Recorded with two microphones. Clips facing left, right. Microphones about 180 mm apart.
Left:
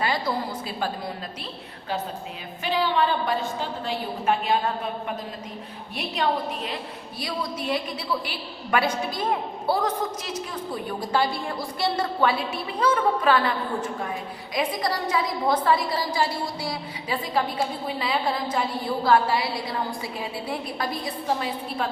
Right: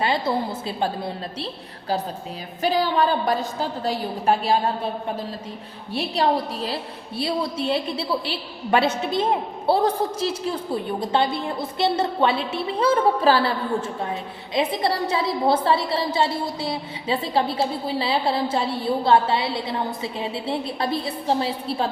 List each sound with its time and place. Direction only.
0.0 s a sound: 25° right (ahead or behind)
0.8 s a woman's voice: 30° right (ahead or behind)
2.6 s a woman's voice: 40° right (ahead or behind)